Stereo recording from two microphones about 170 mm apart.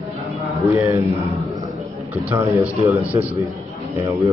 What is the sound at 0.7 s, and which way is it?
Speech, 15° right (ahead or behind).